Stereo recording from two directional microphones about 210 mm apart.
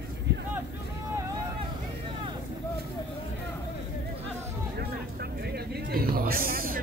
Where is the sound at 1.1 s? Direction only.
25° right (ahead or behind).